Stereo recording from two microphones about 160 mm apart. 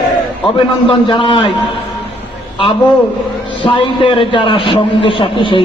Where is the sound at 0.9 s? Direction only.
30° left (ahead or behind).